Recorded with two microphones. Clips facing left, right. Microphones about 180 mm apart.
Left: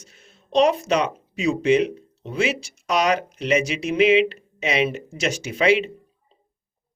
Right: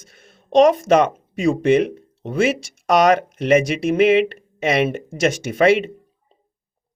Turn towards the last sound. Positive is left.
turn(degrees=-55)  # may be behind; listen again after turning